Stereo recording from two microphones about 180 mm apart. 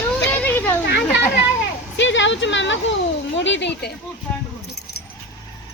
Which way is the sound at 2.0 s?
90° left.